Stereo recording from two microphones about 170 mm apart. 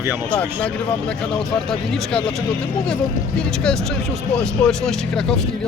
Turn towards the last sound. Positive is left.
turn(degrees=5)  # may be behind; listen again after turning